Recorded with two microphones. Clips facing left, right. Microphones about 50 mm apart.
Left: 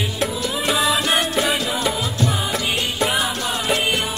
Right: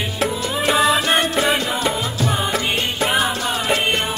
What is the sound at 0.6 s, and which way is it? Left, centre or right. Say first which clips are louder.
Music: right 3 dB; centre.